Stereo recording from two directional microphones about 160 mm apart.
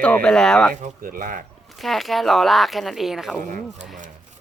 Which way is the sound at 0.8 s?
60° right (ahead or behind).